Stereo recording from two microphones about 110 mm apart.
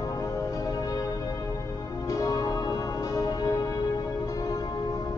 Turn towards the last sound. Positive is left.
turn(degrees=35)  # may be behind; listen again after turning